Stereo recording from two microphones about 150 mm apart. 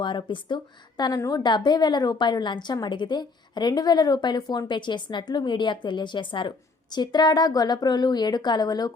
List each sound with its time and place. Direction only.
0.0 s a woman's voice: 30° left (ahead or behind)